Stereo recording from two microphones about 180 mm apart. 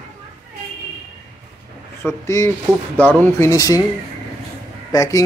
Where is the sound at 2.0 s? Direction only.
15° left (ahead or behind).